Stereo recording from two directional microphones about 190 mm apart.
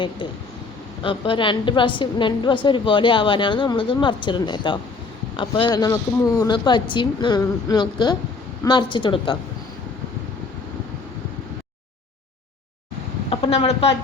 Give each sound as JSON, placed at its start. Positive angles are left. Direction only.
{"t": 1.0, "sound": "a woman's voice", "side_deg": 25}
{"t": 13.3, "sound": "a woman's voice", "side_deg": 30}